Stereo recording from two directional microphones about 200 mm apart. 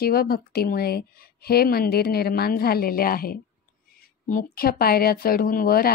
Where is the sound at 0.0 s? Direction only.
50° left (ahead or behind).